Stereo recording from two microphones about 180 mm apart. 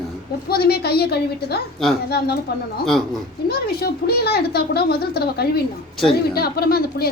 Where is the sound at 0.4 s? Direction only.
60° left (ahead or behind).